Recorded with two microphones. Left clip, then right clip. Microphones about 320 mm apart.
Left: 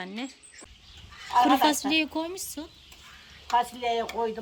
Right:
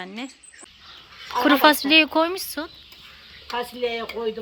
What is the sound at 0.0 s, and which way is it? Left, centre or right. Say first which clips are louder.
Speech: right 2 dB; centre.